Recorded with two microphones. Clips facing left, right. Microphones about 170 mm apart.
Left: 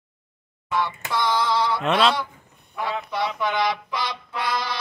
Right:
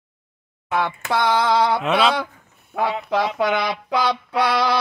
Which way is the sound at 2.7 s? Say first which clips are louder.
Right 6 dB; 90° right.